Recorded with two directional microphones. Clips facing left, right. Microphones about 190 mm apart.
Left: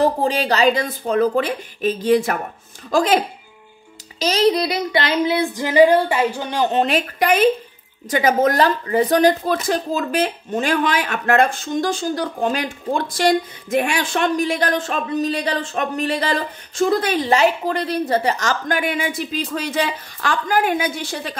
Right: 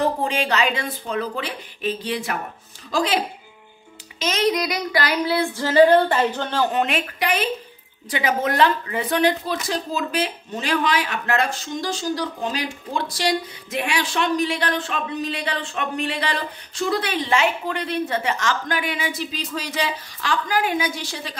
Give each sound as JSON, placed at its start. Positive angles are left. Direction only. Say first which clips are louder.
{"t": 0.0, "sound": "speech", "louder": "left 4 dB", "side_deg": 35}
{"t": 4.2, "sound": "child singing", "louder": "left 4 dB", "side_deg": 35}
{"t": 6.7, "sound": "a woman's voice", "louder": "left 4 dB", "side_deg": 35}